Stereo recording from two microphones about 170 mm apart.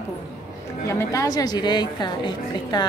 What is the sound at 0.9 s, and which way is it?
A woman's voice, 20° left (ahead or behind).